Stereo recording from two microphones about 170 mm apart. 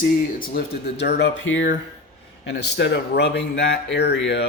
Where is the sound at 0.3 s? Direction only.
65° left (ahead or behind).